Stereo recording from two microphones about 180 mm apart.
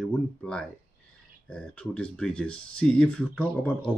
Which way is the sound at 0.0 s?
5° left (ahead or behind).